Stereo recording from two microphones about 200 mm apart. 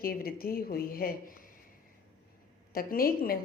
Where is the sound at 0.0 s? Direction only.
50° left (ahead or behind).